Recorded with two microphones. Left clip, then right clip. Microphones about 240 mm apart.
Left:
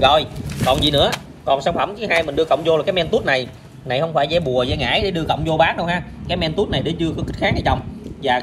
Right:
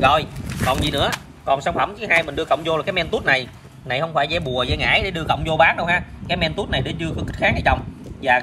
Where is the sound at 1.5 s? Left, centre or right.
Centre.